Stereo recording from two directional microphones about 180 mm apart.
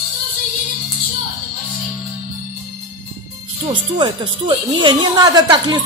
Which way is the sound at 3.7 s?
25° right (ahead or behind).